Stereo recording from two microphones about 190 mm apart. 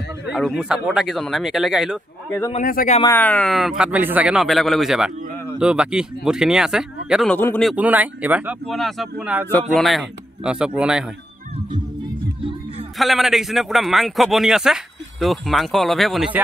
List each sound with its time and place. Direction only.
0.3 s a man's voice: centre (ahead or behind)
2.5 s speech: 45° left (ahead or behind)
3.1 s a man's voice: 10° left (ahead or behind)
7.3 s a man's voice: 10° left (ahead or behind)
7.7 s a man's voice: 10° right (ahead or behind)
9.5 s a man's voice: 5° left (ahead or behind)
13.0 s a man's voice: centre (ahead or behind)